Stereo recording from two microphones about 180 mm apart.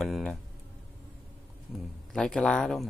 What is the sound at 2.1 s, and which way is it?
Speech, 5° left (ahead or behind).